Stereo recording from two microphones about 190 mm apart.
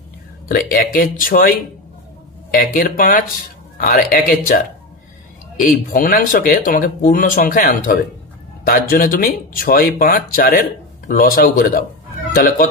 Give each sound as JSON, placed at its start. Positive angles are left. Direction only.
{"t": 0.5, "sound": "speech", "side_deg": 50}
{"t": 2.5, "sound": "speech", "side_deg": 45}
{"t": 5.9, "sound": "speech", "side_deg": 45}